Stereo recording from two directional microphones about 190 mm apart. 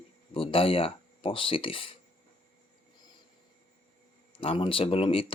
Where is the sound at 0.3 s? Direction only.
30° left (ahead or behind).